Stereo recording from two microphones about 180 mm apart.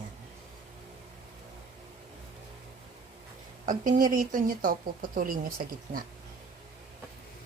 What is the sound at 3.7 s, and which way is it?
Speech, 50° right (ahead or behind).